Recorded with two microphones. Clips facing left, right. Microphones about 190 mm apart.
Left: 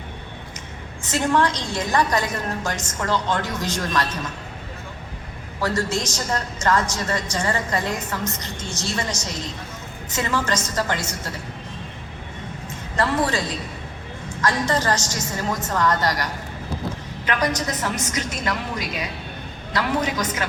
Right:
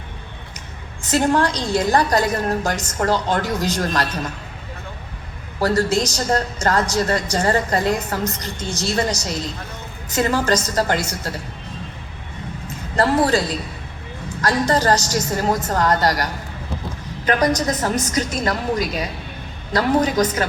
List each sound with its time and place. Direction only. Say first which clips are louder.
1.0 s a woman's voice: right 3 dB; 35° right (ahead or behind)
5.5 s a woman's voice: right 5 dB; 35° right (ahead or behind)
13.0 s a woman's voice: right 5 dB; 35° right (ahead or behind)
14.4 s a woman's voice: right 4 dB; 35° right (ahead or behind)